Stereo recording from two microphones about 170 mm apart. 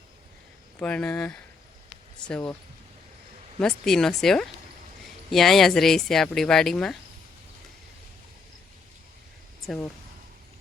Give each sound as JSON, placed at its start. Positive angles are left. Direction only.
{"t": 0.8, "sound": "speech", "side_deg": 5}
{"t": 3.6, "sound": "speech", "side_deg": 5}